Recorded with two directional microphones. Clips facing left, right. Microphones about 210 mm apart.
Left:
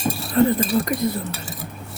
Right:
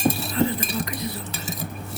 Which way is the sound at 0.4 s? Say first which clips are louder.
Left 7 dB; 55° left (ahead or behind).